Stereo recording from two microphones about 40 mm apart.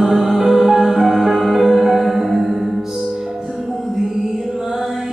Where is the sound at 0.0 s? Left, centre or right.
Centre.